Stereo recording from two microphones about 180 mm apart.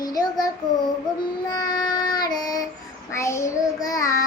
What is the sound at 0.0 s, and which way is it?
Child singing, 20° left (ahead or behind).